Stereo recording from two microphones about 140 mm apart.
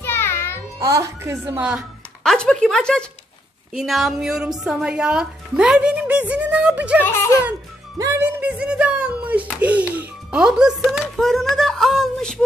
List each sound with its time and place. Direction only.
0.0 s a sound: 15° left (ahead or behind)
0.7 s a woman's voice: 25° right (ahead or behind)
2.2 s speech: 5° left (ahead or behind)
8.0 s speech: 15° right (ahead or behind); by 12.4 s 5° left (ahead or behind)